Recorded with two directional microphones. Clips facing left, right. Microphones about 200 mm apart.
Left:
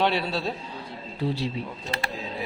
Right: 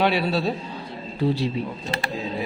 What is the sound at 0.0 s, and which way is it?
Speech, 10° right (ahead or behind).